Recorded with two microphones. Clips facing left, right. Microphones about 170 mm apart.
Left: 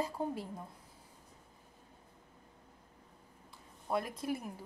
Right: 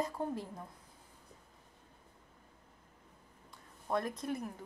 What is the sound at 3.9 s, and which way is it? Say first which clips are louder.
Speech: even; 5° left (ahead or behind).